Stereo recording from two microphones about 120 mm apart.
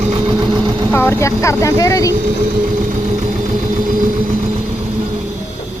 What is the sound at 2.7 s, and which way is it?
Vehicle, 90° right.